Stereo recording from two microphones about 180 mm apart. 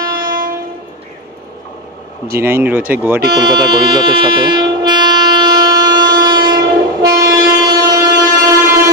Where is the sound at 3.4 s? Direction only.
25° right (ahead or behind).